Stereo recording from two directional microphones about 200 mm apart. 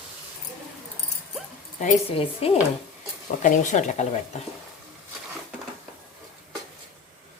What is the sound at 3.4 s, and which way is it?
Speech, 40° left (ahead or behind).